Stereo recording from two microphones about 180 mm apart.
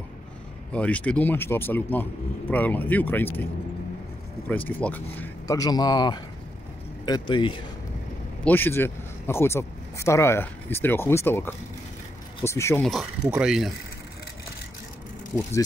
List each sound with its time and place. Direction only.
0.7 s speech: 5° left (ahead or behind)
4.5 s speech: 10° left (ahead or behind); by 7.6 s 25° left (ahead or behind)
8.5 s speech: 10° left (ahead or behind)
12.8 s speech: centre (ahead or behind)